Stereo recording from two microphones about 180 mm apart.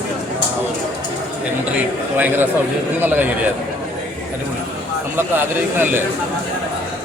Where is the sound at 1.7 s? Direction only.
10° right (ahead or behind).